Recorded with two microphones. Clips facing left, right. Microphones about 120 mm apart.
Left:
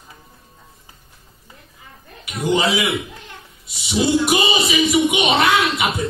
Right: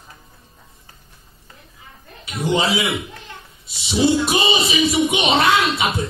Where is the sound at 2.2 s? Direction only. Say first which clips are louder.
Left 1 dB; 25° right (ahead or behind).